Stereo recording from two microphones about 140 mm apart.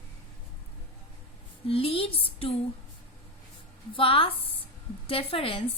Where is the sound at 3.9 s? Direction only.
40° left (ahead or behind).